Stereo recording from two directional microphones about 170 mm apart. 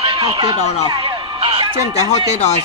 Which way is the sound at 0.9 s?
25° right (ahead or behind).